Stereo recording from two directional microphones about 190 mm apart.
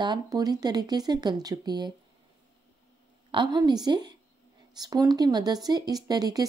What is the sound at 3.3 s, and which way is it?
A woman's voice, 25° right (ahead or behind).